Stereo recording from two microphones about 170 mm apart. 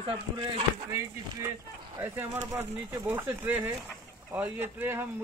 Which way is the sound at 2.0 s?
15° right (ahead or behind).